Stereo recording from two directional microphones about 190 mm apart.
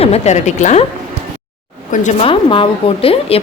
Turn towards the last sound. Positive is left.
turn(degrees=30)  # may be behind; listen again after turning